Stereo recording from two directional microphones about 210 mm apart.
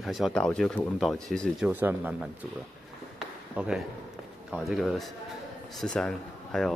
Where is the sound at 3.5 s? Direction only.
Centre (ahead or behind).